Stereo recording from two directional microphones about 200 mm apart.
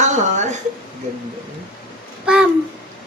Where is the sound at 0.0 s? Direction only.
35° right (ahead or behind).